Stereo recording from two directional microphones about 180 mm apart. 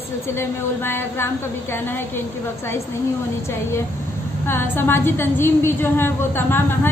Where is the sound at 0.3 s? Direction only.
15° left (ahead or behind).